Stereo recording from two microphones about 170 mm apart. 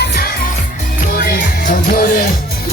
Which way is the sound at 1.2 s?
55° left (ahead or behind).